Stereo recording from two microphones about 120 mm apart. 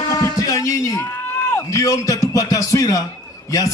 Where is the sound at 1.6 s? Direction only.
30° left (ahead or behind).